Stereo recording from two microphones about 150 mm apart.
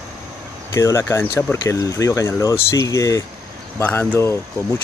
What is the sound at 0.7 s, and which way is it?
Speech, 20° left (ahead or behind).